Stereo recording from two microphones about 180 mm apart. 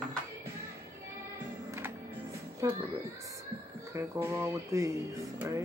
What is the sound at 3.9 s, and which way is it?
Speech, 15° right (ahead or behind).